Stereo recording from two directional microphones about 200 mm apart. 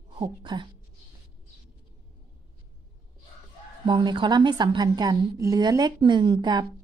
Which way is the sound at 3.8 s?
20° right (ahead or behind).